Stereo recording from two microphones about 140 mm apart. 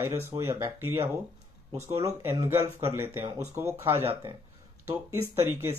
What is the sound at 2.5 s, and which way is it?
Speech, 20° right (ahead or behind).